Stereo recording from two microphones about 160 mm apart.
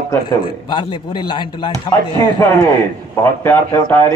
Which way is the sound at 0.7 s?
30° left (ahead or behind).